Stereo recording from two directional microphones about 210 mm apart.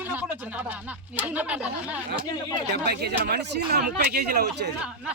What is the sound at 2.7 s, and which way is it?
Speech, 50° right (ahead or behind).